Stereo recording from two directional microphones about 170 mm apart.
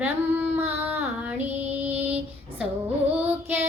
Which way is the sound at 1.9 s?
40° right (ahead or behind).